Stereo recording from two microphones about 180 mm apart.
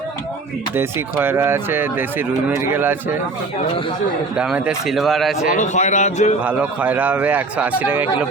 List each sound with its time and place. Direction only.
0.8 s speech: 15° right (ahead or behind)
4.4 s speech: 5° right (ahead or behind)
5.5 s a man's voice: 40° left (ahead or behind)
6.4 s speech: 10° right (ahead or behind)